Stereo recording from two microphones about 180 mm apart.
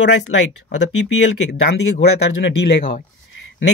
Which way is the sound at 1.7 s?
65° left (ahead or behind).